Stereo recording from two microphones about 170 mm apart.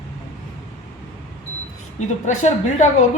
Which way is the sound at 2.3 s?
45° left (ahead or behind).